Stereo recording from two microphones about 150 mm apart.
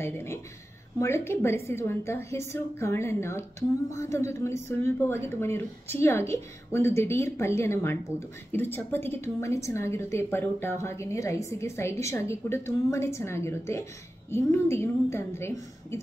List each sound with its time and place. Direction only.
0.0 s speech: 15° left (ahead or behind)